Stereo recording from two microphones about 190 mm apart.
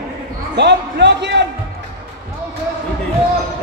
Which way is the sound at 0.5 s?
65° right (ahead or behind).